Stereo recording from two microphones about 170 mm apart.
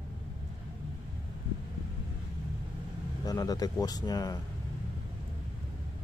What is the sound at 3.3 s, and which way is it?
Speech, 20° left (ahead or behind).